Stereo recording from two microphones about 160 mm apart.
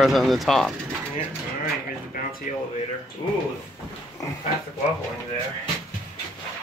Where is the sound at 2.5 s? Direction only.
55° left (ahead or behind).